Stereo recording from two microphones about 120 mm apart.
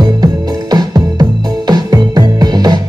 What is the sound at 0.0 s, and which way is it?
Music, 35° right (ahead or behind).